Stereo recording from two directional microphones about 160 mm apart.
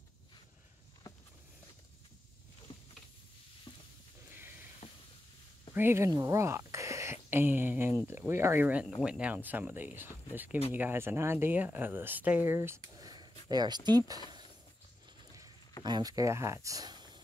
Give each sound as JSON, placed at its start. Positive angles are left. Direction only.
{"t": 2.7, "sound": "a sound", "side_deg": 30}
{"t": 4.3, "sound": "sniff", "side_deg": -15}
{"t": 5.8, "sound": "speech", "side_deg": -15}
{"t": 15.8, "sound": "speech", "side_deg": -25}